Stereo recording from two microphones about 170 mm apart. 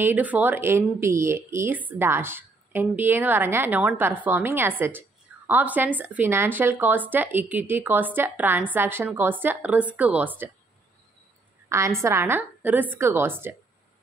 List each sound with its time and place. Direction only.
0.0 s speech: 10° right (ahead or behind)
12.0 s speech: 15° right (ahead or behind)